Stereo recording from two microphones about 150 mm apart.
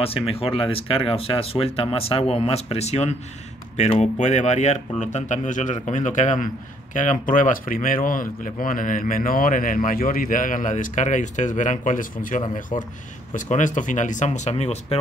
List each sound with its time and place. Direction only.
0.3 s speech: 40° left (ahead or behind)